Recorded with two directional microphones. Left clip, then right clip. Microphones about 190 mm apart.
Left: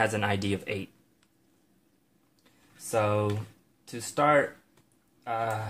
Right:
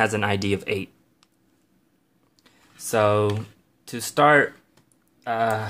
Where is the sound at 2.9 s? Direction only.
40° right (ahead or behind).